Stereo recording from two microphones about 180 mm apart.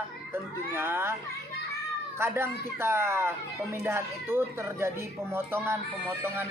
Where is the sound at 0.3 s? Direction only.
10° right (ahead or behind).